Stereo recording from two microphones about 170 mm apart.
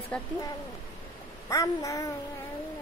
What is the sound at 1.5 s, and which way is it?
Speech, 20° left (ahead or behind).